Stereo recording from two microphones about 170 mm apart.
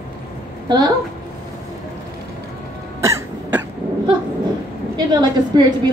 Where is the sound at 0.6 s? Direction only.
25° right (ahead or behind).